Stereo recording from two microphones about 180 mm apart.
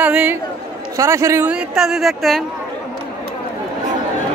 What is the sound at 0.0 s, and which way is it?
A man's voice, 10° right (ahead or behind).